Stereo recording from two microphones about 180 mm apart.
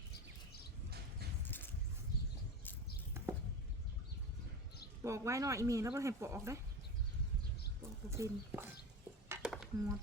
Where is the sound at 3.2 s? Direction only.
15° right (ahead or behind).